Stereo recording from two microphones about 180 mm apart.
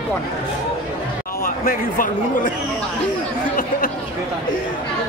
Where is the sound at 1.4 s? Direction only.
50° left (ahead or behind).